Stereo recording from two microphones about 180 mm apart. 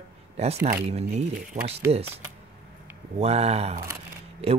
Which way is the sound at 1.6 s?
20° right (ahead or behind).